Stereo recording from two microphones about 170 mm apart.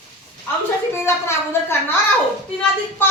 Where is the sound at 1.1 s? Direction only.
15° left (ahead or behind).